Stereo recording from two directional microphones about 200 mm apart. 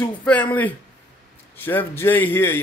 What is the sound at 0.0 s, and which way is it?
Speech, 5° left (ahead or behind).